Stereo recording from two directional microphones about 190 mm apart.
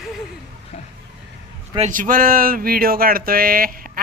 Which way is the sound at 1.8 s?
45° right (ahead or behind).